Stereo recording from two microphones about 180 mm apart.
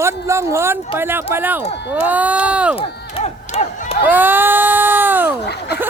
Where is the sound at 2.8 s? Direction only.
30° left (ahead or behind).